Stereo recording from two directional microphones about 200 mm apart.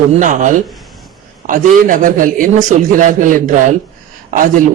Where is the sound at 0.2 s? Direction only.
40° right (ahead or behind).